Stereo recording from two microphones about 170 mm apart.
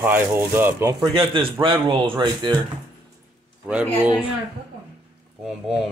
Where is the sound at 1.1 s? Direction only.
30° right (ahead or behind).